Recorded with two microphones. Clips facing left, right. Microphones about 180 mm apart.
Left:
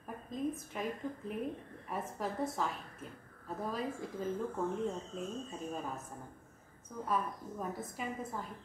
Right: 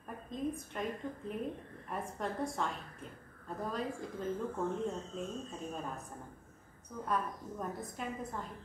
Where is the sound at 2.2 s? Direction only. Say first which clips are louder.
Even; 5° left (ahead or behind).